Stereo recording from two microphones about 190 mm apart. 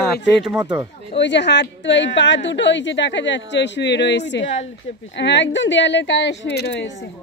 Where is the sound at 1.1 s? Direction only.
65° left (ahead or behind).